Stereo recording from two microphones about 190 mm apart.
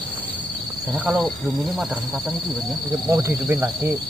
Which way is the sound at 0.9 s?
Centre (ahead or behind).